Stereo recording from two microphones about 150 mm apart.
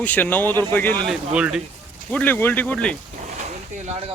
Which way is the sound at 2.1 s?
10° left (ahead or behind).